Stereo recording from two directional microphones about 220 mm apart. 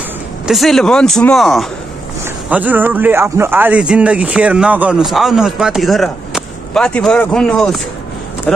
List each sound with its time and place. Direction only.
0.5 s speech: centre (ahead or behind)